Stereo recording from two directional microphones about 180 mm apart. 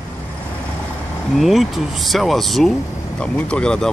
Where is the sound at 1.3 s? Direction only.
Centre (ahead or behind).